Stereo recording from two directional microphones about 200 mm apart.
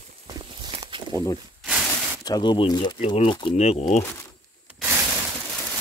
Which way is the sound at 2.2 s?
20° left (ahead or behind).